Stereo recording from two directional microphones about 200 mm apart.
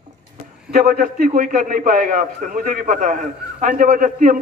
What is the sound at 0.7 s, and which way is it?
A man's voice, 45° right (ahead or behind).